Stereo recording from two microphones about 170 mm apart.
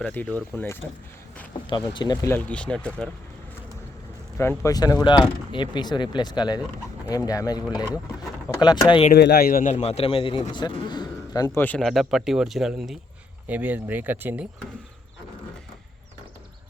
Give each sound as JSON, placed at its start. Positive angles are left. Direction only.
{"t": 0.0, "sound": "speech", "side_deg": 10}
{"t": 1.6, "sound": "speech", "side_deg": 25}
{"t": 2.3, "sound": "speech", "side_deg": 10}
{"t": 4.4, "sound": "speech", "side_deg": 15}
{"t": 8.5, "sound": "speech", "side_deg": -10}
{"t": 9.1, "sound": "a man's voice", "side_deg": 70}
{"t": 11.6, "sound": "speech", "side_deg": 5}